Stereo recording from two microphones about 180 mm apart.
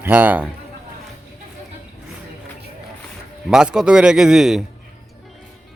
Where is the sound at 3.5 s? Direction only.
5° right (ahead or behind).